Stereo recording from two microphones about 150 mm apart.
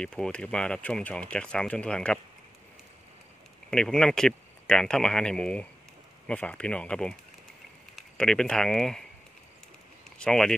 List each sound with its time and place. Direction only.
0.0 s speech: 5° left (ahead or behind)
3.7 s speech: 5° left (ahead or behind)
10.1 s speech: 5° left (ahead or behind)